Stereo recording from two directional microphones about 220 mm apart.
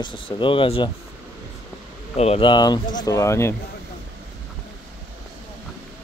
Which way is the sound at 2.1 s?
25° left (ahead or behind).